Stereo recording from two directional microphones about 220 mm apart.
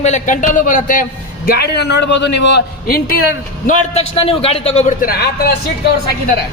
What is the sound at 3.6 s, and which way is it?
A man's voice, 30° left (ahead or behind).